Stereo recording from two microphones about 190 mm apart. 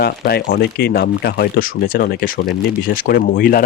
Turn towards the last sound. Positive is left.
turn(degrees=50)  # may be behind; listen again after turning